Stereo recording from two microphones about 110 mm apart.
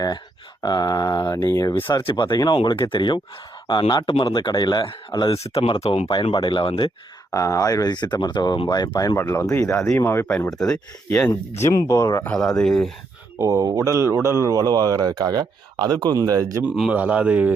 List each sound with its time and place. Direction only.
0.6 s speech: 35° left (ahead or behind)
1.7 s speech: 50° left (ahead or behind)
2.6 s speech: 55° left (ahead or behind)
2.9 s speech: 45° left (ahead or behind)
5.3 s speech: 65° left (ahead or behind)
6.2 s speech: 50° left (ahead or behind)
7.3 s speech: 30° left (ahead or behind)
9.1 s speech: 20° left (ahead or behind)
10.5 s speech: 5° left (ahead or behind)
11.3 s speech: 25° left (ahead or behind)
12.2 s speech: 5° left (ahead or behind)
13.4 s speech: 30° right (ahead or behind)
16.6 s a man's voice: 5° right (ahead or behind)